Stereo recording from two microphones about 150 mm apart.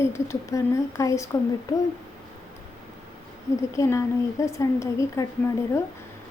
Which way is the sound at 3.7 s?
20° left (ahead or behind).